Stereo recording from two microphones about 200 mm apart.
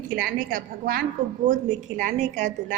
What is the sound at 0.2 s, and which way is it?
A woman's voice, 45° right (ahead or behind).